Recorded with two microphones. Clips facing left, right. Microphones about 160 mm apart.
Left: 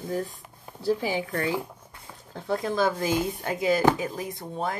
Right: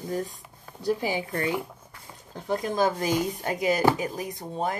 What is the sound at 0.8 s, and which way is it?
Speech, 15° right (ahead or behind).